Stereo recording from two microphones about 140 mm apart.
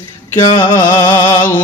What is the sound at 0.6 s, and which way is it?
Music, 25° left (ahead or behind).